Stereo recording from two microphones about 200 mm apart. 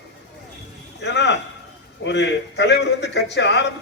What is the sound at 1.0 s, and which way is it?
A man's voice, 60° left (ahead or behind).